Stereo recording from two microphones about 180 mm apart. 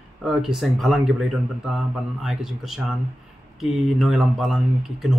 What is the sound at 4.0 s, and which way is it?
Speech, centre (ahead or behind).